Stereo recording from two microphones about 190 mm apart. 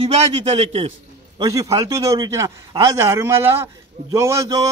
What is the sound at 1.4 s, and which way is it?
A man's voice, 20° right (ahead or behind).